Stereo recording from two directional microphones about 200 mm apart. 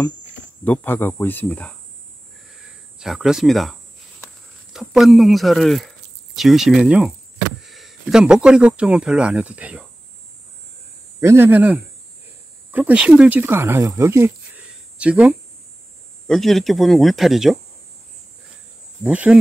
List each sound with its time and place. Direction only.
0.7 s speech: 10° left (ahead or behind)
3.0 s speech: centre (ahead or behind)
4.7 s speech: centre (ahead or behind)
11.1 s a man's voice: 10° right (ahead or behind)
19.0 s a man's voice: 5° right (ahead or behind)